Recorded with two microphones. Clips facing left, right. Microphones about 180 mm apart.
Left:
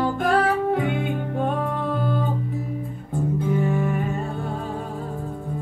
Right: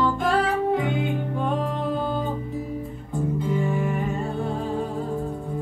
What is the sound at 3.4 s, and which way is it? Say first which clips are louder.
Music: left 3 dB; 55° left (ahead or behind).